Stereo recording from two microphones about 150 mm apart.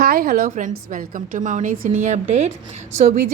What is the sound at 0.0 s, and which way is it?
A woman's voice, 75° right (ahead or behind).